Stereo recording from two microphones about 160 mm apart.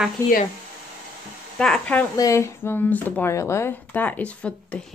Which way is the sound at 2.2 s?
20° left (ahead or behind).